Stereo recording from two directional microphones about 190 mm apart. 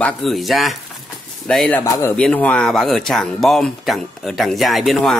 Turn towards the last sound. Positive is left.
turn(degrees=0)  # may be behind; listen again after turning